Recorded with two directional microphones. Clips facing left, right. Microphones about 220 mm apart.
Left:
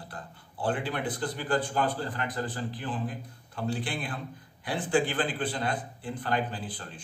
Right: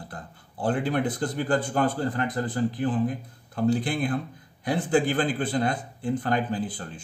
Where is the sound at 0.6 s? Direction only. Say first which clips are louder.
Right 5 dB; 45° right (ahead or behind).